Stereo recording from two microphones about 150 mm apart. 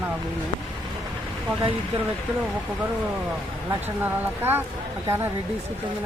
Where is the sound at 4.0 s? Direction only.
15° right (ahead or behind).